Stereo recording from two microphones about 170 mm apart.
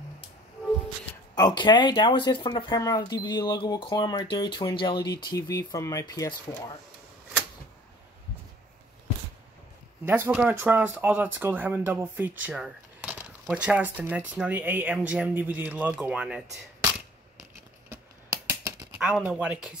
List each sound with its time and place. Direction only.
1.3 s speech: 25° left (ahead or behind)
10.0 s speech: 10° right (ahead or behind)
17.8 s a sound: 15° right (ahead or behind)